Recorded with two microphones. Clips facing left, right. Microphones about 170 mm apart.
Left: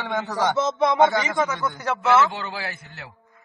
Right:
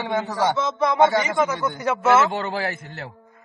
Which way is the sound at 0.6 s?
5° right (ahead or behind).